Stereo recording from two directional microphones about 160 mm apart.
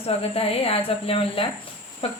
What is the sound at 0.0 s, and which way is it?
Speech, 35° left (ahead or behind).